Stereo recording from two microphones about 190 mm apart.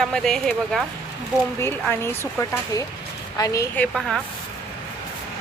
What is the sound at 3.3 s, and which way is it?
Speech, 15° left (ahead or behind).